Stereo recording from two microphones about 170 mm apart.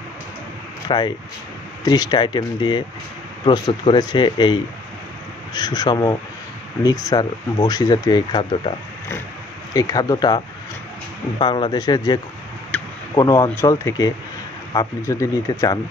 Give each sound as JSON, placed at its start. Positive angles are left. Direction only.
{"t": 0.8, "sound": "speech", "side_deg": 25}
{"t": 9.8, "sound": "speech", "side_deg": 20}
{"t": 12.7, "sound": "a sound", "side_deg": 10}
{"t": 13.1, "sound": "speech", "side_deg": 20}